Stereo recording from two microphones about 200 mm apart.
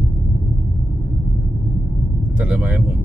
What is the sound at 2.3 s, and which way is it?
Speech, 5° right (ahead or behind).